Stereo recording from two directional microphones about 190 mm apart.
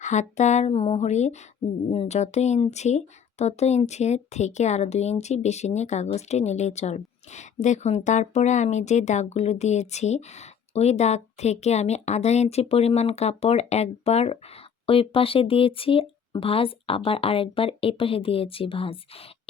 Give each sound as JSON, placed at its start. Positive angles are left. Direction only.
{"t": 0.0, "sound": "speech", "side_deg": 40}